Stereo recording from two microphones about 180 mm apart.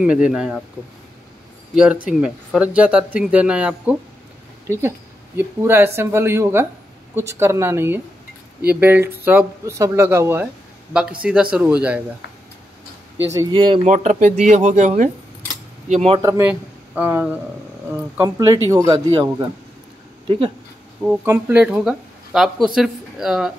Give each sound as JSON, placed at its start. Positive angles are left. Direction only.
{"t": 0.0, "sound": "speech", "side_deg": -5}
{"t": 2.0, "sound": "speech", "side_deg": -5}
{"t": 5.4, "sound": "speech", "side_deg": -15}
{"t": 13.5, "sound": "speech", "side_deg": -30}
{"t": 13.8, "sound": "speech", "side_deg": -40}
{"t": 16.2, "sound": "speech", "side_deg": -15}
{"t": 21.0, "sound": "speech", "side_deg": -5}